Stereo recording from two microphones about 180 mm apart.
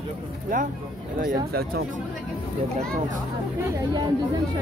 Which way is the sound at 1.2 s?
60° right (ahead or behind).